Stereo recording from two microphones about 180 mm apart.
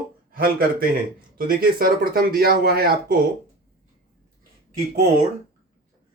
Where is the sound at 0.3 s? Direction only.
55° right (ahead or behind).